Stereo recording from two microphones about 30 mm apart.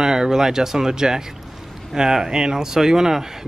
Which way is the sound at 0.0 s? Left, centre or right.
Centre.